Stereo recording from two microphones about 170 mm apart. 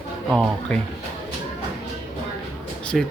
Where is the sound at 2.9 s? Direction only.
Centre (ahead or behind).